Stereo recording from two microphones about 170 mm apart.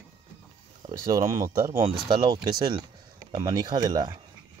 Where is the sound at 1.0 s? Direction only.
20° right (ahead or behind).